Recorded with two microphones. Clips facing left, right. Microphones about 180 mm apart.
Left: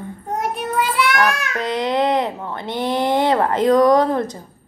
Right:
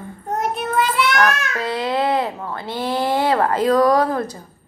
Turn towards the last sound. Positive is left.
turn(degrees=20)  # may be behind; listen again after turning